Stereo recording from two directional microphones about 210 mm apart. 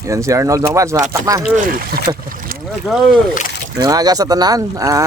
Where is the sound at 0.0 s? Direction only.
15° right (ahead or behind).